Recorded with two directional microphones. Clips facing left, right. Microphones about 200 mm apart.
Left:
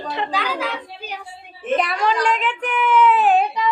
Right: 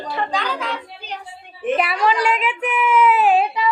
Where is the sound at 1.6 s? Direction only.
5° right (ahead or behind).